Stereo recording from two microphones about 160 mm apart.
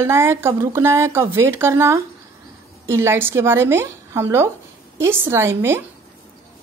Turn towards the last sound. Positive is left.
turn(degrees=-15)  # may be behind; listen again after turning